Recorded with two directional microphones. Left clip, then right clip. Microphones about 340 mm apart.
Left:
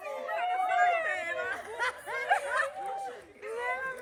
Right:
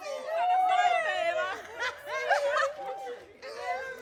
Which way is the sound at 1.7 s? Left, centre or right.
Centre.